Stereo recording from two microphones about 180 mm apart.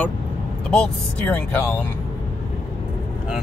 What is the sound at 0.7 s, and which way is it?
Speech, 10° left (ahead or behind).